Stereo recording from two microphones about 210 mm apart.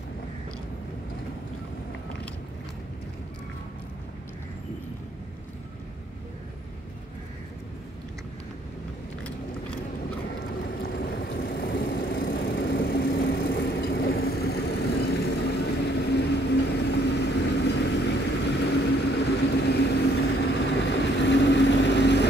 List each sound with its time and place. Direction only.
10.8 s vehicle: 45° left (ahead or behind)